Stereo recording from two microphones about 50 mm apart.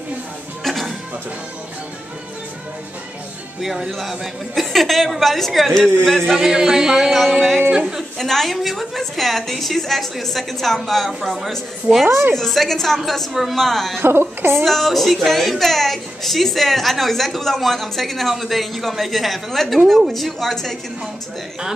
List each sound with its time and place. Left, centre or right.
0.7 s music: centre
3.6 s a woman's voice: centre
6.3 s a woman's voice: centre
7.7 s speech: centre
8.2 s a woman's voice: centre
12.1 s a woman's voice: right
12.4 s a woman's voice: centre
13.9 s a woman's voice: right
14.6 s a woman's voice: centre